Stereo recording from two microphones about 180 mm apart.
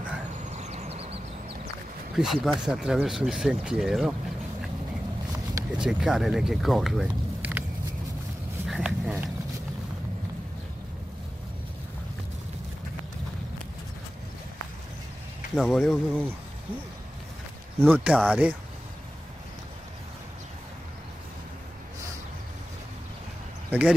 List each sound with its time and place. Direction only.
0.6 s vehicle: 40° right (ahead or behind)
2.1 s speech: centre (ahead or behind)
5.3 s a sound: 15° right (ahead or behind)
5.8 s speech: 5° right (ahead or behind)
8.6 s a sound: centre (ahead or behind)
15.5 s speech: centre (ahead or behind)
17.7 s speech: 10° right (ahead or behind)